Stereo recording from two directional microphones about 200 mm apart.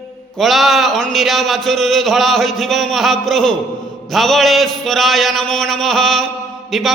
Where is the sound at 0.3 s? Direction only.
Centre (ahead or behind).